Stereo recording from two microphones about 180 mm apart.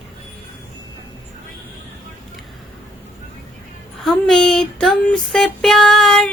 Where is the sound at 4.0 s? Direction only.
Centre (ahead or behind).